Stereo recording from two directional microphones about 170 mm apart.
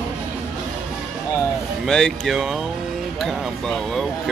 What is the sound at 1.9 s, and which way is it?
Speech, 5° left (ahead or behind).